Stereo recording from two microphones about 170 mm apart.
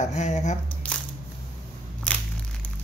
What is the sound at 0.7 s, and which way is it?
Camera, 10° left (ahead or behind).